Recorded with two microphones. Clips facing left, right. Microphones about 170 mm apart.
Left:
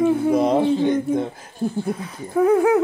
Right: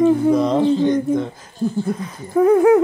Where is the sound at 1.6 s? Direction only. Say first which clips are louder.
Right 3 dB; 30° left (ahead or behind).